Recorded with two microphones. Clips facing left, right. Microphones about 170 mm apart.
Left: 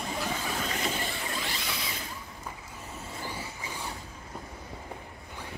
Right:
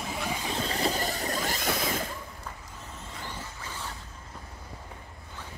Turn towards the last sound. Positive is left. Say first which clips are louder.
# left 1 dB
turn(degrees=15)  # may be behind; listen again after turning